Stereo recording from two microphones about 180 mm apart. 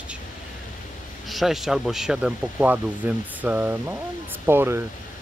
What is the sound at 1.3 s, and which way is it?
Speech, centre (ahead or behind).